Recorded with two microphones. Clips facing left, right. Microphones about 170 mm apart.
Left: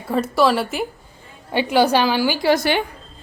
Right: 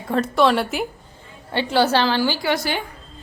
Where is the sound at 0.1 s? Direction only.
Centre (ahead or behind).